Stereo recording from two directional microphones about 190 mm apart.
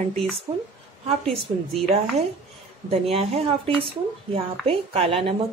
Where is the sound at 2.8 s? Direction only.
30° right (ahead or behind).